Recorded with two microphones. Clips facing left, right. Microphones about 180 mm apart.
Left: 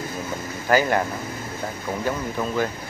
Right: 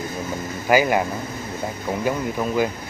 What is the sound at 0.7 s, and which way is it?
Speech, 10° right (ahead or behind).